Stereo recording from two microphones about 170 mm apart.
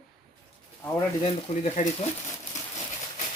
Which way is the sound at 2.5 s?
45° left (ahead or behind).